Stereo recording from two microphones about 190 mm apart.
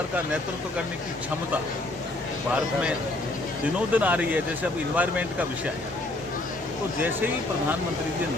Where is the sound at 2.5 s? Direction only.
5° right (ahead or behind).